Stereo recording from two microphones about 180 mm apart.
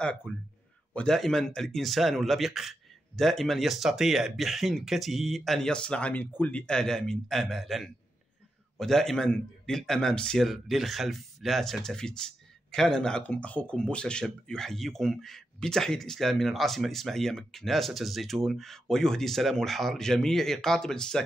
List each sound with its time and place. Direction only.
0.3 s speech: 5° left (ahead or behind)